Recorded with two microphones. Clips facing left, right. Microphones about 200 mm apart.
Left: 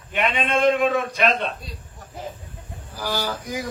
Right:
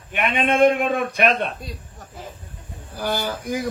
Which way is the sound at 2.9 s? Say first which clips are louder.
Right 2 dB; 55° right (ahead or behind).